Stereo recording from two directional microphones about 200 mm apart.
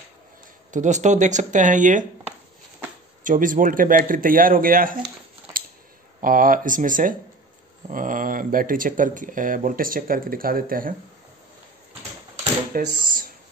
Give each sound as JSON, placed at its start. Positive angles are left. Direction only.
{"t": 0.7, "sound": "speech", "side_deg": -40}
{"t": 3.3, "sound": "speech", "side_deg": -40}
{"t": 6.2, "sound": "speech", "side_deg": -45}
{"t": 12.7, "sound": "typewriter", "side_deg": -45}